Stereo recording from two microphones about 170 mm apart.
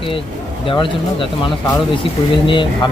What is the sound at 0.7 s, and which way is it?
Speech, 30° left (ahead or behind).